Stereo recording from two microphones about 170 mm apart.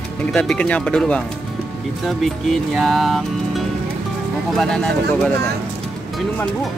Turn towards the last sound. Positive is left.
turn(degrees=5)  # may be behind; listen again after turning